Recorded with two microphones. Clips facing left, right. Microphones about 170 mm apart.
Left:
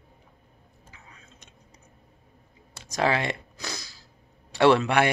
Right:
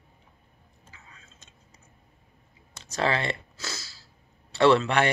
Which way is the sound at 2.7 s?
10° left (ahead or behind).